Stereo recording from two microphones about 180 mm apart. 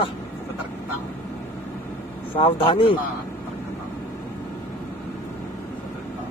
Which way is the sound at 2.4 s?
30° left (ahead or behind).